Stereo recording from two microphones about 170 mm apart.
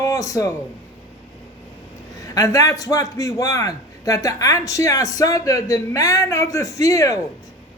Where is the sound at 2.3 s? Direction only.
20° left (ahead or behind).